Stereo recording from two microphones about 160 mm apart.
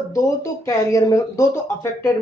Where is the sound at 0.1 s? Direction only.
20° left (ahead or behind).